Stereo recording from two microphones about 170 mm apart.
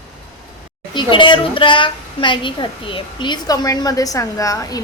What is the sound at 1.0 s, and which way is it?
A woman's voice, 30° left (ahead or behind).